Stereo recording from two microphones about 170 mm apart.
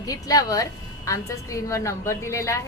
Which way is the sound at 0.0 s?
20° left (ahead or behind).